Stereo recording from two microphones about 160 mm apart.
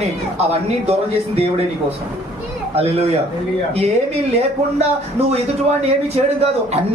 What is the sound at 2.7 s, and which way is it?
A man's voice, 40° right (ahead or behind).